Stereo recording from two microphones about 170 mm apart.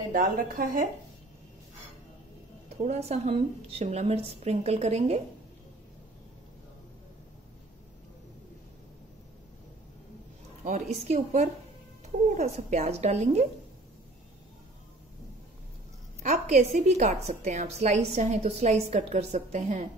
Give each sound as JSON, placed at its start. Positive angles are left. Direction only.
{"t": 0.1, "sound": "a woman's voice", "side_deg": -55}
{"t": 2.7, "sound": "a woman's voice", "side_deg": -40}
{"t": 10.6, "sound": "a woman's voice", "side_deg": -45}
{"t": 16.2, "sound": "a woman's voice", "side_deg": -45}